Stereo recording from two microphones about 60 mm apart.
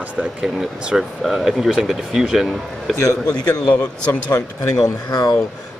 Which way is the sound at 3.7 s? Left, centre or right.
Left.